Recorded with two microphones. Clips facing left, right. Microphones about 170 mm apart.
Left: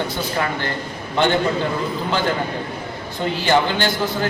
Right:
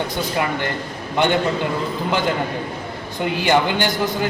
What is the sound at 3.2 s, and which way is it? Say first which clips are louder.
Speech: even; 15° right (ahead or behind).